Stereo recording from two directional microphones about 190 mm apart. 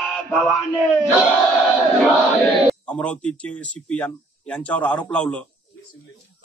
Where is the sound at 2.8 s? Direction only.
5° left (ahead or behind).